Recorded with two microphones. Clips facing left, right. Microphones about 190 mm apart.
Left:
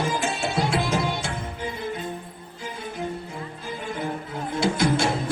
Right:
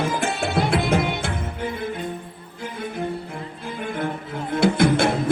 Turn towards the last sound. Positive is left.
turn(degrees=-55)  # may be behind; listen again after turning